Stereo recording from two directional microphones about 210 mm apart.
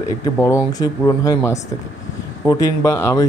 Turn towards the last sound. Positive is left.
turn(degrees=15)  # may be behind; listen again after turning